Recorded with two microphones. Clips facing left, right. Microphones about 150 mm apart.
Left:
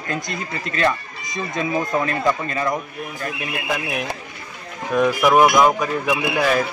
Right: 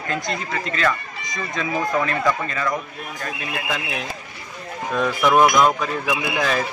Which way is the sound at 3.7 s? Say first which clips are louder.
Left 5 dB; 15° left (ahead or behind).